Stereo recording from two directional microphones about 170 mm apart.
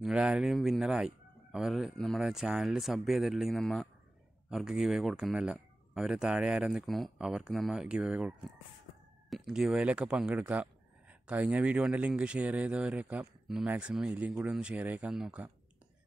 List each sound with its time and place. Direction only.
0.0 s speech: 5° right (ahead or behind)